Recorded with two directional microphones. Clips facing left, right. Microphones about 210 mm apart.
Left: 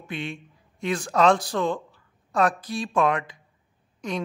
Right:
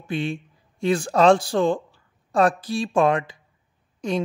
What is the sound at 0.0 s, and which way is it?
Speech, 30° right (ahead or behind).